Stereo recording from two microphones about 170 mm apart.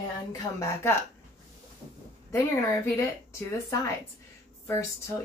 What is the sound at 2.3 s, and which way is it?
Speech, 15° left (ahead or behind).